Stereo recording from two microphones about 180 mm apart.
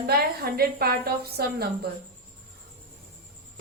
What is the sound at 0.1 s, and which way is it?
A woman's voice, 60° right (ahead or behind).